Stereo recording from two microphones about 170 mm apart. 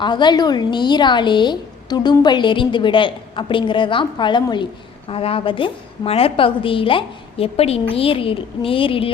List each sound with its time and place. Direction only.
0.0 s a woman's voice: 25° left (ahead or behind)